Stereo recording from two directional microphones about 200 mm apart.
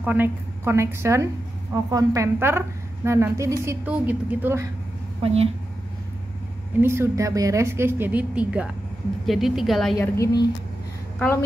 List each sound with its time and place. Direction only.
0.0 s a woman's voice: 10° right (ahead or behind)
5.2 s a woman's voice: 30° right (ahead or behind)
6.8 s a woman's voice: 10° right (ahead or behind)
10.1 s a woman's voice: 15° left (ahead or behind)